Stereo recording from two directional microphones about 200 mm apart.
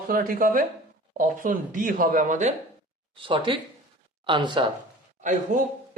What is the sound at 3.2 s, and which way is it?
Speech, 25° right (ahead or behind).